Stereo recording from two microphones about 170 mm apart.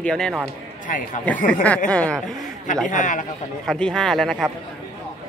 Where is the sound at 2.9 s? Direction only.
50° left (ahead or behind).